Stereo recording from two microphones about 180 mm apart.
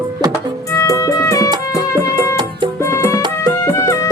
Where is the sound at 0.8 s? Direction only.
20° left (ahead or behind).